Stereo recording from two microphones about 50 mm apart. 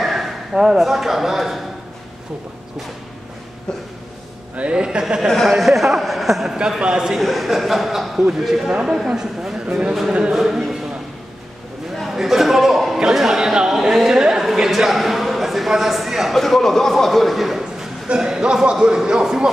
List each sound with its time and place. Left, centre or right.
0.0 s speech: centre
4.6 s a man's voice: centre
5.5 s speech: centre
6.8 s a man's voice: centre
7.2 s a man's voice: centre
10.3 s a man's voice: centre
12.0 s a sound: centre
18.0 s a man's voice: centre